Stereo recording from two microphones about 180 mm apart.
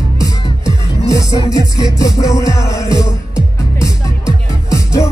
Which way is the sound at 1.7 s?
20° left (ahead or behind).